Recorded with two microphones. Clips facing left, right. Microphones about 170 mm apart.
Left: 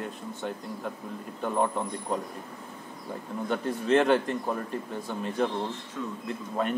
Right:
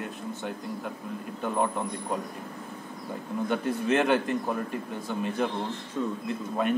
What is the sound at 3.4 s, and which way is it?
Speech, 10° right (ahead or behind).